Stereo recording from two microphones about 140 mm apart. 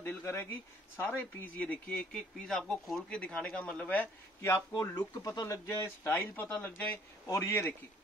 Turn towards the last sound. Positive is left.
turn(degrees=20)  # may be behind; listen again after turning